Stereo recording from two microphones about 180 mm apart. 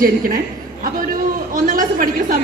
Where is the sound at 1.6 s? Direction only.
50° right (ahead or behind).